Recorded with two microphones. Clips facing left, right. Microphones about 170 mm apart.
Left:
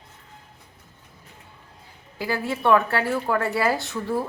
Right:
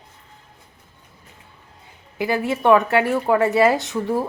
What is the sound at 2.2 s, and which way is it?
A woman's voice, 15° right (ahead or behind).